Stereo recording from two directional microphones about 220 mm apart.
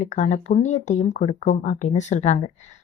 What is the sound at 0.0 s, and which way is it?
Speech, 35° left (ahead or behind).